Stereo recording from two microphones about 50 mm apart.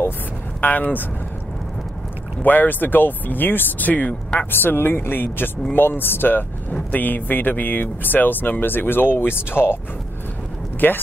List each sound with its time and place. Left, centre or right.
0.6 s speech: left
2.4 s speech: left
4.5 s speech: left
6.7 s speech: left
10.8 s speech: left